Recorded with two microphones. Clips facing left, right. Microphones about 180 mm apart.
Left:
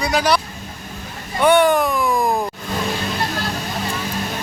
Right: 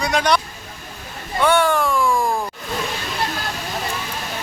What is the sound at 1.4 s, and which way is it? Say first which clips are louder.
Speech: left 3 dB; 15° left (ahead or behind).